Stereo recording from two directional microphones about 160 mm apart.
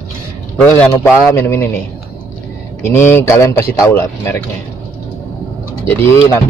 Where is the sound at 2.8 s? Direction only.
15° left (ahead or behind).